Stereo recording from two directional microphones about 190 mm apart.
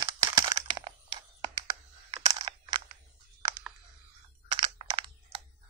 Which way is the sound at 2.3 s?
25° right (ahead or behind).